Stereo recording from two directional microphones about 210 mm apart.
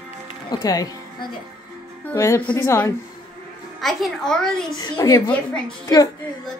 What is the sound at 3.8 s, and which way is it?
Speech, centre (ahead or behind).